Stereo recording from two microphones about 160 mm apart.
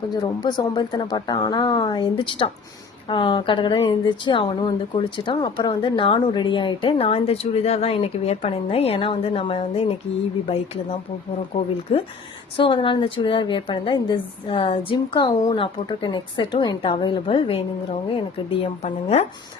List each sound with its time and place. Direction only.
0.1 s a woman's voice: 25° left (ahead or behind)
11.5 s a woman's voice: 35° left (ahead or behind)